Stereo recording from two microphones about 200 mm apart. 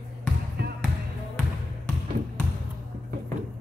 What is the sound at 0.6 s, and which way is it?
Music, 50° right (ahead or behind).